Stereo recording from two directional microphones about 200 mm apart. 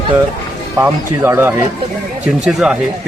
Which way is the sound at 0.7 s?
10° right (ahead or behind).